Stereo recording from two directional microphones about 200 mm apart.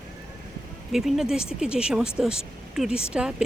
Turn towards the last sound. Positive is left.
turn(degrees=-5)  # may be behind; listen again after turning